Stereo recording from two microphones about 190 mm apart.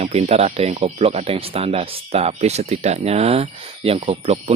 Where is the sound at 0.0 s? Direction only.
35° right (ahead or behind).